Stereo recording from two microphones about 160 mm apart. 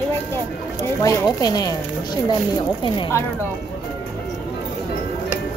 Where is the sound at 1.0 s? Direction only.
20° left (ahead or behind).